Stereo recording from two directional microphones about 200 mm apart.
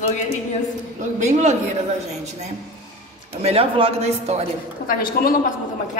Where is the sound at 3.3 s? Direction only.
30° right (ahead or behind).